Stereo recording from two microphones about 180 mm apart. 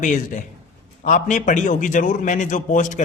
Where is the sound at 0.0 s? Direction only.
45° left (ahead or behind).